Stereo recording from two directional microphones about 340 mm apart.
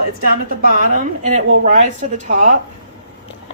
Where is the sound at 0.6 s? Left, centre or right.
Right.